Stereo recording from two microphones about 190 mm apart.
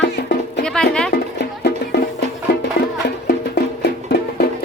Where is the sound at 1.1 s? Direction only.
60° left (ahead or behind).